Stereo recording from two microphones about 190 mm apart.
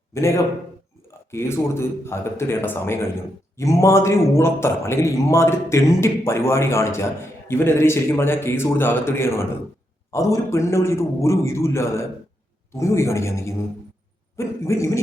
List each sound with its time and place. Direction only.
0.1 s a man's voice: 15° left (ahead or behind)